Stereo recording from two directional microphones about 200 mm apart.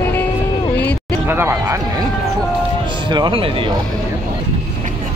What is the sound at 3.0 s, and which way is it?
Speech, 25° right (ahead or behind).